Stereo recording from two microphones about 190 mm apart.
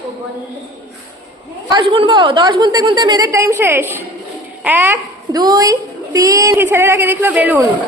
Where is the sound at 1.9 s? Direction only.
25° right (ahead or behind).